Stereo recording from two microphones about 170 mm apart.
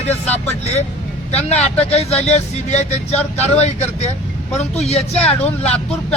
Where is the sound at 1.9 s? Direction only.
40° left (ahead or behind).